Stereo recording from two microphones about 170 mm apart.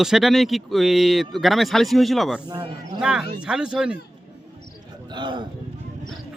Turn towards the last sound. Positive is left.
turn(degrees=-25)  # may be behind; listen again after turning